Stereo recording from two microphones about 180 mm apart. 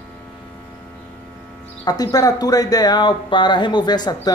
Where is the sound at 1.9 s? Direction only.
20° left (ahead or behind).